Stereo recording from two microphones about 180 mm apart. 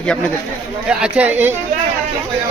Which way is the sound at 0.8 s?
5° right (ahead or behind).